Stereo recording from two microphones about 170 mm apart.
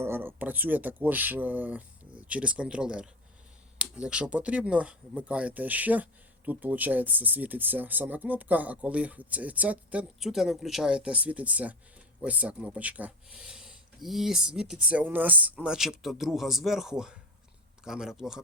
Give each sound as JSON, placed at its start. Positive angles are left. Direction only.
{"t": 0.0, "sound": "speech", "side_deg": -15}